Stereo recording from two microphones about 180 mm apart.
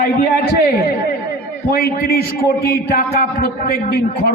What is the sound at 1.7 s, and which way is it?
A man's voice, 55° left (ahead or behind).